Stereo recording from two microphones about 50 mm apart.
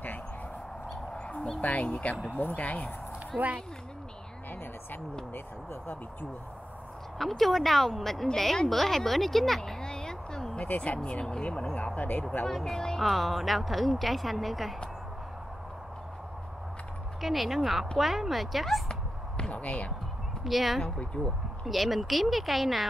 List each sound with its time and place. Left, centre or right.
1.1 s a sound: centre
1.6 s speech: left
3.3 s a woman's voice: right
5.3 s speech: left
7.2 s speech: centre
9.6 s a sound: centre
10.6 s speech: left
12.4 s speech: centre
17.2 s speech: centre
18.9 s a sound: centre
20.4 s speech: centre
20.8 s speech: left
21.6 s speech: centre